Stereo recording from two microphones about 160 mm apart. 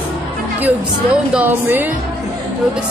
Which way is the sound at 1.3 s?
10° right (ahead or behind).